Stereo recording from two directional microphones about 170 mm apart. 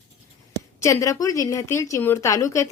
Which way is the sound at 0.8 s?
20° left (ahead or behind).